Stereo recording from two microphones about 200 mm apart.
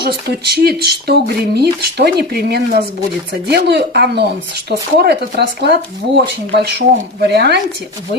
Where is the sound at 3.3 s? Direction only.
55° right (ahead or behind).